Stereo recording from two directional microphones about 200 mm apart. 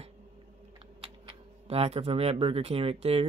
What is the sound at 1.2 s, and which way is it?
Speech, 30° right (ahead or behind).